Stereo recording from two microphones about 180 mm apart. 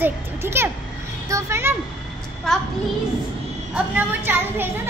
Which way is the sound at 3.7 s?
10° right (ahead or behind).